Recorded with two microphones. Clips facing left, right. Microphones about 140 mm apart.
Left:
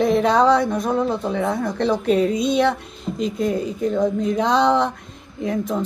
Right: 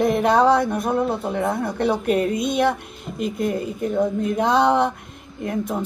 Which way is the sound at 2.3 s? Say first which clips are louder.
Left 3 dB; 55° right (ahead or behind).